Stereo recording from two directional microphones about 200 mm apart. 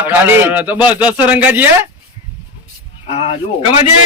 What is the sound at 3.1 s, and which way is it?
Speech, 30° left (ahead or behind).